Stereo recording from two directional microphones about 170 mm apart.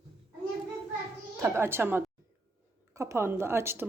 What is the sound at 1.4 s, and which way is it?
Speech, 15° right (ahead or behind).